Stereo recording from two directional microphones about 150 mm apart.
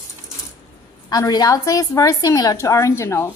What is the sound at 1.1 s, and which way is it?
A woman's voice, 25° left (ahead or behind).